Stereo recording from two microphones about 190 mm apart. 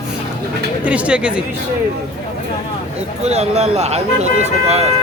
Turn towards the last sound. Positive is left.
turn(degrees=-35)  # may be behind; listen again after turning